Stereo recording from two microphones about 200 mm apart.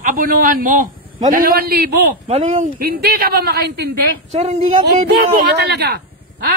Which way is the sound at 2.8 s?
50° right (ahead or behind).